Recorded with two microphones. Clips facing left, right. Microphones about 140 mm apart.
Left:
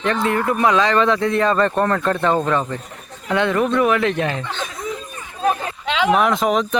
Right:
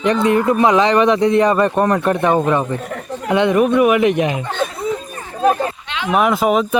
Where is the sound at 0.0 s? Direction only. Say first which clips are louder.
Right 5 dB; 20° right (ahead or behind).